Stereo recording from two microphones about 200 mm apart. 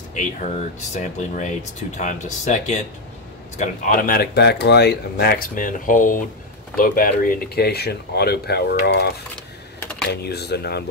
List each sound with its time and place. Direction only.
0.1 s speech: 35° left (ahead or behind); by 10.8 s 55° left (ahead or behind)